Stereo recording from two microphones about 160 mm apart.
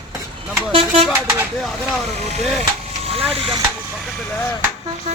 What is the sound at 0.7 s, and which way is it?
Speech, 35° right (ahead or behind).